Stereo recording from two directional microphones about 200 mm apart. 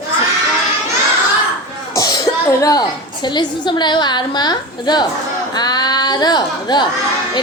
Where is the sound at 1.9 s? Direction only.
15° left (ahead or behind).